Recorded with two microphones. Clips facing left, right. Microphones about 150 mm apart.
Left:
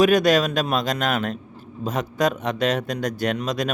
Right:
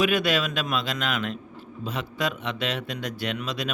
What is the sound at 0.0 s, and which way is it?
A man's voice, 40° left (ahead or behind).